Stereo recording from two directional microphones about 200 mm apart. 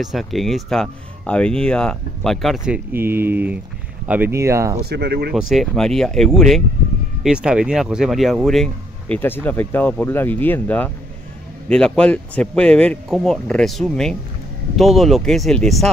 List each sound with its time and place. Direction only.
0.0 s speech: centre (ahead or behind)
4.8 s speech: 55° right (ahead or behind)
5.3 s speech: centre (ahead or behind)